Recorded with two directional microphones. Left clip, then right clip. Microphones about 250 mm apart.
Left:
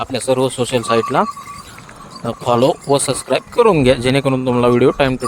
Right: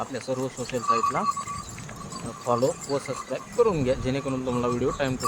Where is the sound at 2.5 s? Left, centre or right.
Left.